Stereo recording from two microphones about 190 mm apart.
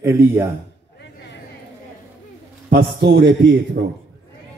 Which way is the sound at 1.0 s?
65° left (ahead or behind).